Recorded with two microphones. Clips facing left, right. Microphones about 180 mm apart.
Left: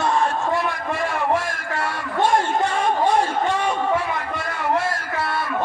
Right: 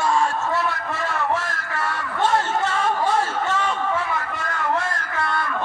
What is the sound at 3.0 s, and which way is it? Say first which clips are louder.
Music: left 3 dB; 15° left (ahead or behind).